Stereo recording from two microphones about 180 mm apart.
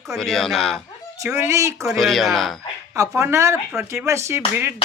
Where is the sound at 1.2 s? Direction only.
15° right (ahead or behind).